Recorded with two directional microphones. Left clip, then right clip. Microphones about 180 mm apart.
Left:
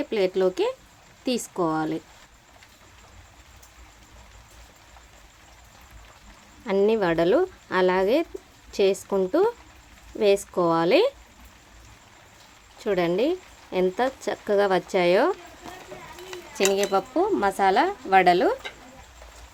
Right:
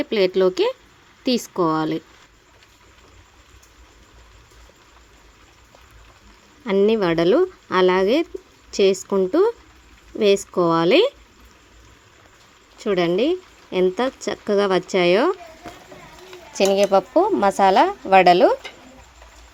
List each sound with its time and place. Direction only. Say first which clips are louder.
0.0 s speech: right 5 dB; 20° right (ahead or behind)
6.7 s speech: right 4 dB; 25° right (ahead or behind)
12.8 s speech: right 4 dB; 20° right (ahead or behind)
16.6 s speech: right 6 dB; 25° right (ahead or behind)